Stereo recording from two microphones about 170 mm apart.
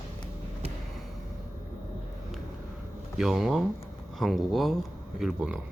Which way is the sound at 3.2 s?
Centre (ahead or behind).